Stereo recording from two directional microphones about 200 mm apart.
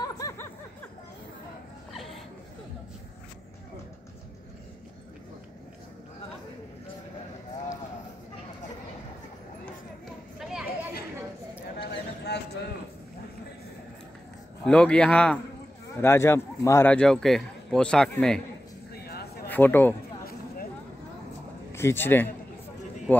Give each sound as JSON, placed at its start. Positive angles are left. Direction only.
{"t": 0.0, "sound": "snicker", "side_deg": 15}
{"t": 1.9, "sound": "a sound", "side_deg": 0}
{"t": 10.4, "sound": "chatter", "side_deg": -5}
{"t": 12.3, "sound": "clip-clop", "side_deg": 55}
{"t": 14.6, "sound": "a man's voice", "side_deg": 5}
{"t": 18.9, "sound": "a sound", "side_deg": 50}
{"t": 19.5, "sound": "speech", "side_deg": 10}
{"t": 21.7, "sound": "speech", "side_deg": 10}